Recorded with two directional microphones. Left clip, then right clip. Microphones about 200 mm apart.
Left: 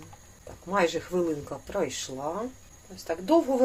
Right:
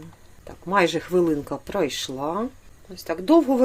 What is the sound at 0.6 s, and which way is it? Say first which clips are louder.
Speech: right 5 dB; 45° right (ahead or behind).